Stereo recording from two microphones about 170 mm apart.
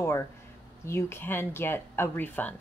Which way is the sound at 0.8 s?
15° left (ahead or behind).